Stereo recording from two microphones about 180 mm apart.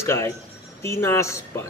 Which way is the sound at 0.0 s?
15° left (ahead or behind).